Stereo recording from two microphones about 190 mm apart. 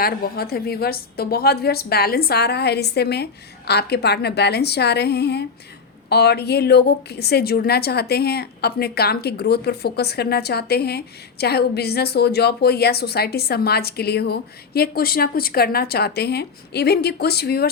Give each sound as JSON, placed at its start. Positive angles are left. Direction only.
{"t": 0.0, "sound": "a woman's voice", "side_deg": 55}